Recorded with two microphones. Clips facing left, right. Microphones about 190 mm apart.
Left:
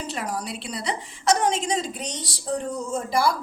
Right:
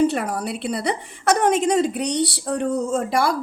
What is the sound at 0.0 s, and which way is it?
Speech, 55° right (ahead or behind).